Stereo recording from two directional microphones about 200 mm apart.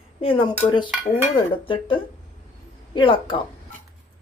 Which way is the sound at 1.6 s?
25° left (ahead or behind).